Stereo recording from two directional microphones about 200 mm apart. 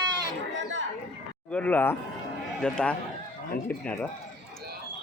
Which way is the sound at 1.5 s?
5° left (ahead or behind).